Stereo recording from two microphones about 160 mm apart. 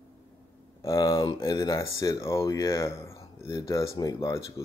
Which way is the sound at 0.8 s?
20° left (ahead or behind).